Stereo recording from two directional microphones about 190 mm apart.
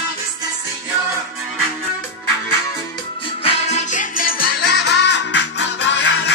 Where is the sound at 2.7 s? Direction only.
30° left (ahead or behind); by 6.3 s 65° left (ahead or behind).